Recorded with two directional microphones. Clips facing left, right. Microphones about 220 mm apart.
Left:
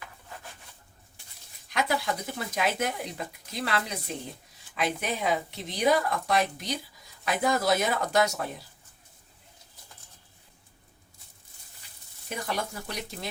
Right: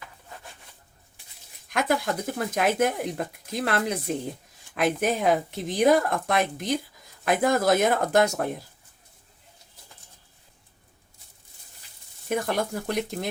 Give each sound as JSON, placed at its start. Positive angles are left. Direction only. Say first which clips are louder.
{"t": 1.7, "sound": "speech", "louder": "right 4 dB", "side_deg": -50}
{"t": 12.3, "sound": "speech", "louder": "right 7 dB", "side_deg": -50}